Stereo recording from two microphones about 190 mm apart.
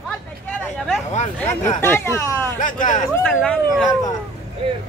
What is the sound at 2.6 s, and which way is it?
Speech, 45° left (ahead or behind).